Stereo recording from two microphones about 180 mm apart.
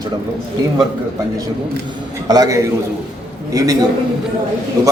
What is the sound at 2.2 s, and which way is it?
Speech, 20° right (ahead or behind).